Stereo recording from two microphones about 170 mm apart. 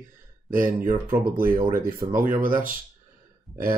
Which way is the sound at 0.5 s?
55° right (ahead or behind).